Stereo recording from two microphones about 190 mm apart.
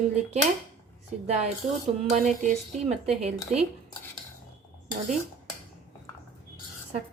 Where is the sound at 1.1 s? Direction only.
40° right (ahead or behind).